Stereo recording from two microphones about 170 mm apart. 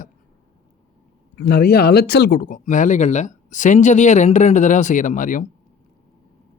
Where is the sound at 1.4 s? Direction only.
75° left (ahead or behind); by 5.5 s 50° left (ahead or behind).